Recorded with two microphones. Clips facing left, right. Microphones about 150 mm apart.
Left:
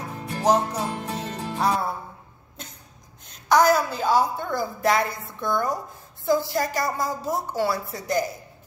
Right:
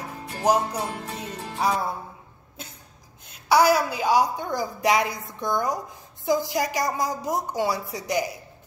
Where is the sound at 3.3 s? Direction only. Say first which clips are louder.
Even; 10° right (ahead or behind).